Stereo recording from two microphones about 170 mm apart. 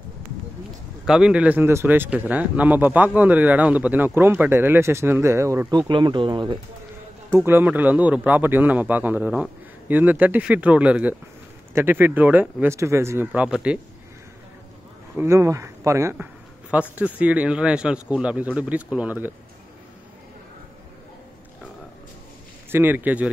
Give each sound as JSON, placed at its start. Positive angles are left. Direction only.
{"t": 1.0, "sound": "speech", "side_deg": -5}
{"t": 7.2, "sound": "speech", "side_deg": -15}
{"t": 15.1, "sound": "speech", "side_deg": -15}
{"t": 22.7, "sound": "speech", "side_deg": -10}